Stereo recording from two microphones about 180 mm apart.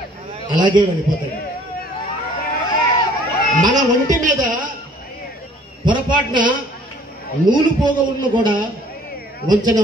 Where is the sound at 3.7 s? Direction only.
45° right (ahead or behind).